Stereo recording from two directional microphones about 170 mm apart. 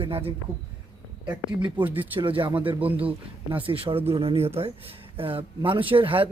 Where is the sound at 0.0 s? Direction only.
35° right (ahead or behind).